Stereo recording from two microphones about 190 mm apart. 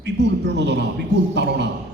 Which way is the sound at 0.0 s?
65° right (ahead or behind).